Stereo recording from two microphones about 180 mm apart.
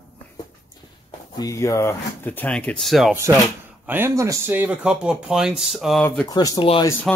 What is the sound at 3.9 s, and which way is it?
Speech, 15° right (ahead or behind).